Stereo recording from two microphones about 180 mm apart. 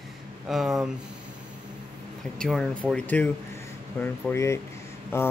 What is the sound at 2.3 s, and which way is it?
A man's voice, 5° left (ahead or behind).